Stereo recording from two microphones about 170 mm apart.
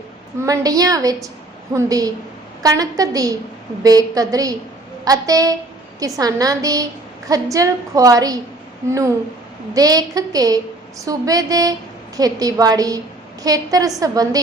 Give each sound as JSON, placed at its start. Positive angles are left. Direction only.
{"t": 0.3, "sound": "a woman's voice", "side_deg": -20}